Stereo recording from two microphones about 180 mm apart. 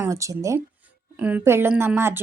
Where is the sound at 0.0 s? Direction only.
15° right (ahead or behind).